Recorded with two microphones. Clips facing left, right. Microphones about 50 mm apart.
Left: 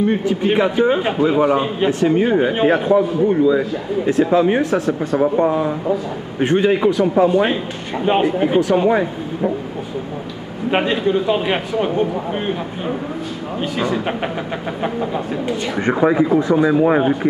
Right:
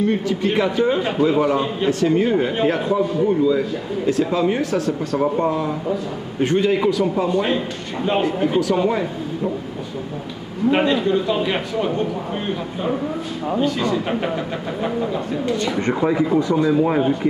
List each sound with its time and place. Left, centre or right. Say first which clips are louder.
0.0 s a man's voice: left 2 dB; centre
5.1 s speech: left 4 dB; centre
5.5 s a man's voice: left 3 dB; left
10.8 s a man's voice: left 4 dB; left
13.6 s a man's voice: even; centre